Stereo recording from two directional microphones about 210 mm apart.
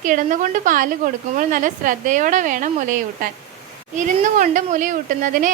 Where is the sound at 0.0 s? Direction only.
40° right (ahead or behind).